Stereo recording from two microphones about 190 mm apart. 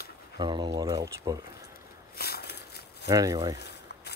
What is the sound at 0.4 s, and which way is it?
Speech, 20° right (ahead or behind).